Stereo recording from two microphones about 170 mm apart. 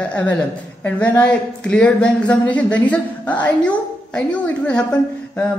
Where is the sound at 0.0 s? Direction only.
10° left (ahead or behind).